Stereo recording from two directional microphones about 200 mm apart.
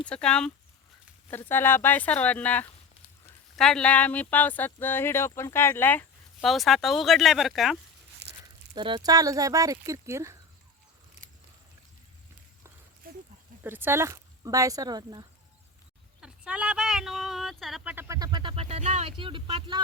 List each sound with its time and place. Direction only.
0.1 s speech: 5° left (ahead or behind)
8.2 s a sound: 55° right (ahead or behind)
8.7 s speech: 25° right (ahead or behind)
13.0 s a sound: 45° right (ahead or behind)
13.7 s speech: 10° right (ahead or behind)
16.2 s speech: 5° right (ahead or behind); by 19.8 s 25° right (ahead or behind)